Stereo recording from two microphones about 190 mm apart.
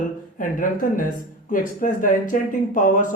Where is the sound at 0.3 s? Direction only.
45° left (ahead or behind).